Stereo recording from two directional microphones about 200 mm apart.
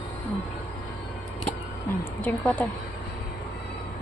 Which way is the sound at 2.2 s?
10° left (ahead or behind).